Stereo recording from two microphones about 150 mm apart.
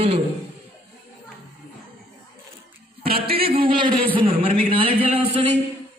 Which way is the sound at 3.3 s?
40° right (ahead or behind).